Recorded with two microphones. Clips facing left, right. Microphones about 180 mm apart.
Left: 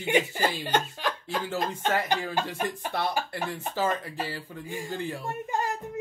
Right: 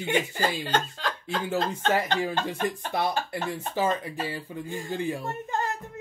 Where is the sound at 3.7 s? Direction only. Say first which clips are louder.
Right 1 dB; 15° right (ahead or behind).